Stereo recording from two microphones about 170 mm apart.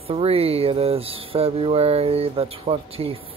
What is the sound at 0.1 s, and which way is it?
Speech, 35° right (ahead or behind).